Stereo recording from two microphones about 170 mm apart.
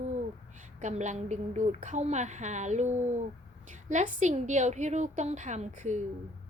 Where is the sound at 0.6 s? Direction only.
45° right (ahead or behind).